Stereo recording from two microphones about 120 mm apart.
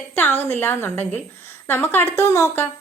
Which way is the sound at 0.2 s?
15° left (ahead or behind).